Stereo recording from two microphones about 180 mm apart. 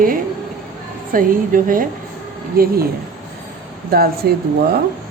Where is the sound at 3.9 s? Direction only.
60° right (ahead or behind).